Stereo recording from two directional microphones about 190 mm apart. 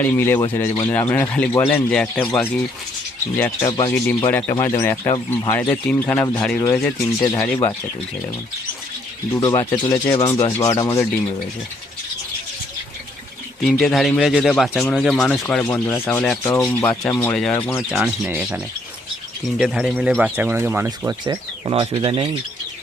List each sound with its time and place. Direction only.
0.0 s speech: 10° left (ahead or behind)
0.3 s speech: 20° left (ahead or behind)
0.6 s speech: 10° left (ahead or behind)
3.3 s speech: 10° left (ahead or behind)
9.3 s speech: 15° left (ahead or behind)
13.6 s speech: centre (ahead or behind)
19.6 s speech: centre (ahead or behind); by 21.2 s 15° right (ahead or behind)
21.2 s speech: 30° right (ahead or behind)